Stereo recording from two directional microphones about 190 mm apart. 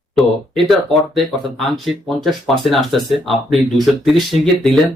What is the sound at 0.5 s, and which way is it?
Speech, centre (ahead or behind).